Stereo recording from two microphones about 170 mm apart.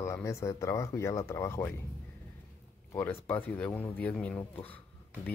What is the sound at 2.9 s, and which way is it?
Speech, 10° left (ahead or behind).